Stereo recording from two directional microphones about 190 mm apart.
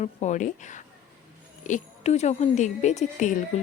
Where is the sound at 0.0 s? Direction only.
35° left (ahead or behind).